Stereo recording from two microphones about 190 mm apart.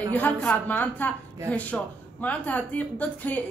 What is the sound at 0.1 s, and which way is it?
A woman's voice, 10° left (ahead or behind).